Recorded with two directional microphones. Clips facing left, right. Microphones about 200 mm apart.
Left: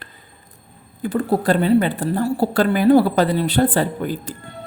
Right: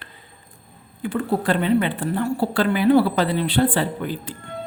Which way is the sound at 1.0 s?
40° left (ahead or behind).